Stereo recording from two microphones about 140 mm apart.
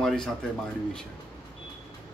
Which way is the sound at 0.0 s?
5° left (ahead or behind).